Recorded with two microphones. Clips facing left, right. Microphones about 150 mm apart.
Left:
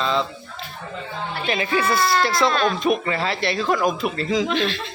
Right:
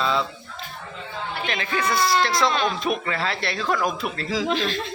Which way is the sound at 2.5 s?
20° right (ahead or behind).